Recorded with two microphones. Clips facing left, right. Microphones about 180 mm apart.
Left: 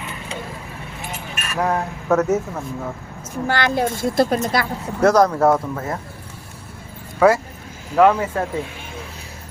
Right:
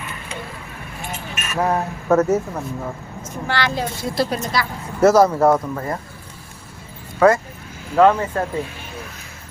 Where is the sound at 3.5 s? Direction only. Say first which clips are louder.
Left 3 dB; 50° left (ahead or behind).